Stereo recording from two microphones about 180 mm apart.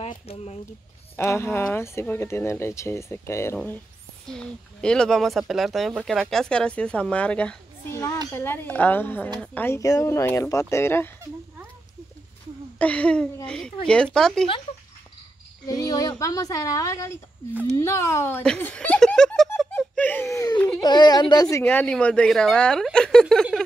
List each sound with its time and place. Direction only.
0.0 s speech: 35° left (ahead or behind)
1.1 s speech: 15° left (ahead or behind)
12.7 s speech: 5° left (ahead or behind)
15.6 s speech: 20° left (ahead or behind); by 19.7 s centre (ahead or behind)
19.7 s a sound: 10° left (ahead or behind)
20.5 s baby cry: 5° left (ahead or behind)
20.8 s speech: 20° left (ahead or behind); by 23.4 s 5° left (ahead or behind)